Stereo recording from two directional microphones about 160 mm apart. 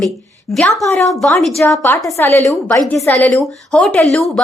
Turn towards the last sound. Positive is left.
turn(degrees=0)  # may be behind; listen again after turning